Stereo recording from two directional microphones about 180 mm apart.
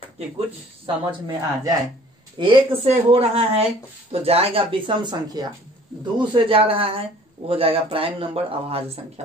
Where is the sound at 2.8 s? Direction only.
35° right (ahead or behind).